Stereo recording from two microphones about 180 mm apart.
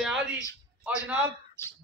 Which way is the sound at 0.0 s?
5° right (ahead or behind).